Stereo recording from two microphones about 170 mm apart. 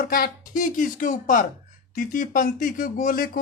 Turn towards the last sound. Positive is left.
turn(degrees=55)  # may be behind; listen again after turning